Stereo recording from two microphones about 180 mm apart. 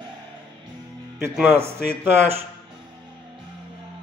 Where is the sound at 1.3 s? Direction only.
10° right (ahead or behind).